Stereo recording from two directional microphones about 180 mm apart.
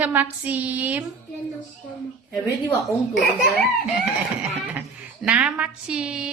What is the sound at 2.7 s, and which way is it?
Speech, 5° left (ahead or behind).